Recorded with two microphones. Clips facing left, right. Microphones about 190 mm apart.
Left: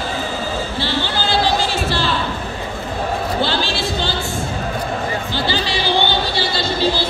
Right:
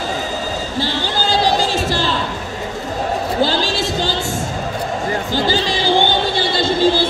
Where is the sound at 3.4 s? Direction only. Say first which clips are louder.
Right 3 dB; 40° right (ahead or behind).